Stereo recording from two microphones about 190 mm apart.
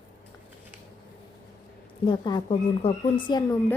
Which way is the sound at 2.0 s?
25° left (ahead or behind).